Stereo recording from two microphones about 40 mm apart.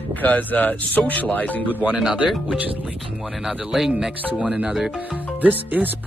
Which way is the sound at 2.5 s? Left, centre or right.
Right.